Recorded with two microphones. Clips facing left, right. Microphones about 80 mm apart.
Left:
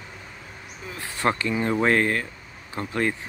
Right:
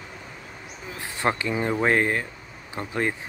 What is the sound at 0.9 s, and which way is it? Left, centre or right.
Speech, centre.